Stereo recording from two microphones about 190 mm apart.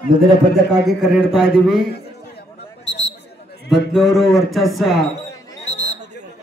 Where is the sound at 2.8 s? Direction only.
70° left (ahead or behind).